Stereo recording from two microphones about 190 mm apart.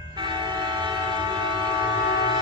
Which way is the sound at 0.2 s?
25° right (ahead or behind).